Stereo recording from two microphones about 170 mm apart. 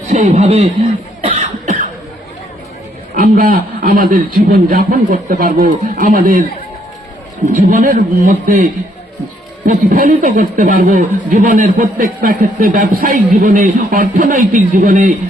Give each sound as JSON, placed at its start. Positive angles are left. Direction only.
{"t": 0.1, "sound": "speech", "side_deg": -45}
{"t": 1.2, "sound": "cough", "side_deg": -40}
{"t": 3.2, "sound": "a man's voice", "side_deg": -55}
{"t": 7.4, "sound": "speech", "side_deg": -50}